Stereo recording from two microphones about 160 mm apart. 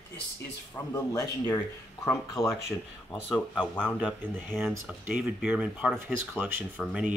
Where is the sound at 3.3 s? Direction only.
10° left (ahead or behind).